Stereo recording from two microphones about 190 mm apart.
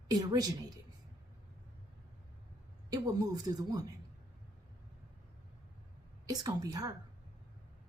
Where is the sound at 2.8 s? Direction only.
20° right (ahead or behind).